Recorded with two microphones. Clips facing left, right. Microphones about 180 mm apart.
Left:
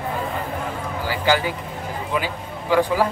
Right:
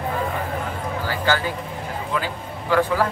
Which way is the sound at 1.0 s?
15° left (ahead or behind).